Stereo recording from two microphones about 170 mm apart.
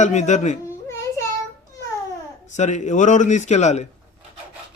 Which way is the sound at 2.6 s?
45° left (ahead or behind).